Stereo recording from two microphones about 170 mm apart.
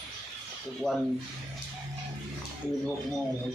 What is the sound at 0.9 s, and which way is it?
Speech, 5° left (ahead or behind).